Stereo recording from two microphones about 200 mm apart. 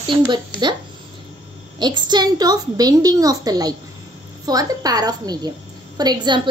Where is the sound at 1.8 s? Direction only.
20° right (ahead or behind).